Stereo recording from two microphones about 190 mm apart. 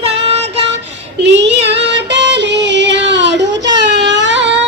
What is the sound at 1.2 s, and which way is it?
Child singing, 70° right (ahead or behind).